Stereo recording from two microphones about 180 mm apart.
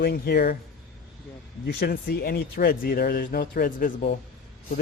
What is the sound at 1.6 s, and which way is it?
Speech, 60° left (ahead or behind).